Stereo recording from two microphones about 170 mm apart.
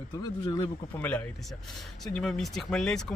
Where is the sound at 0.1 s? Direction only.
25° left (ahead or behind).